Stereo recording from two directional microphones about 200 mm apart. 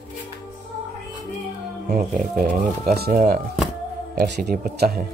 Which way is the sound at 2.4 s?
50° right (ahead or behind).